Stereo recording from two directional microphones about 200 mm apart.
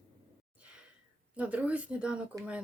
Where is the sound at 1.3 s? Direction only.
5° right (ahead or behind).